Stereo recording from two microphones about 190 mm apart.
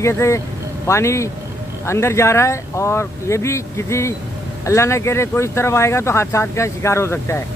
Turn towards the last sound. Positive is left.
turn(degrees=15)  # may be behind; listen again after turning